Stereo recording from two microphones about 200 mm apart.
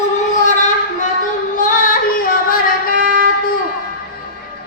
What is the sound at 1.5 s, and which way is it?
Music, 40° left (ahead or behind).